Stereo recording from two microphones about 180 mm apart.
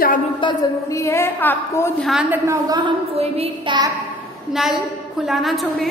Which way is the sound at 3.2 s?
30° right (ahead or behind).